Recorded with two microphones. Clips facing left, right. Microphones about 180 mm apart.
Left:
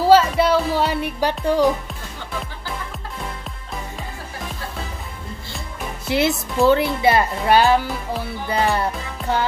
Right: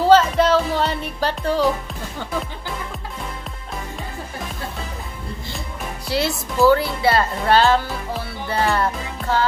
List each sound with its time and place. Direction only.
0.0 s music: 10° left (ahead or behind)
6.0 s speech: 20° left (ahead or behind)